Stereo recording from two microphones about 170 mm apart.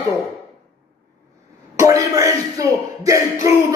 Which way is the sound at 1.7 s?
20° right (ahead or behind).